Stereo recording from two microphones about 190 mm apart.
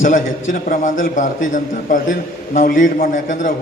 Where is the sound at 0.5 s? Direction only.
45° left (ahead or behind).